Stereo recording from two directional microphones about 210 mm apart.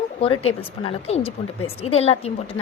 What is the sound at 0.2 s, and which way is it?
A woman's voice, 25° left (ahead or behind).